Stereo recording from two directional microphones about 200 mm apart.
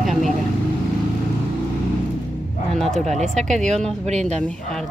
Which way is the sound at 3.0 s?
35° right (ahead or behind).